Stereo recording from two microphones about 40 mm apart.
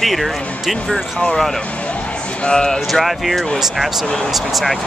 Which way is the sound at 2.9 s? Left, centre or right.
Centre.